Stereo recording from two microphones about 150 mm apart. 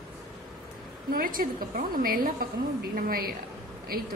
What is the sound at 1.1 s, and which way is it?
A woman's voice, 70° right (ahead or behind).